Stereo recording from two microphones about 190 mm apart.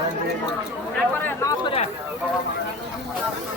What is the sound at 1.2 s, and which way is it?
Chatter, 15° left (ahead or behind).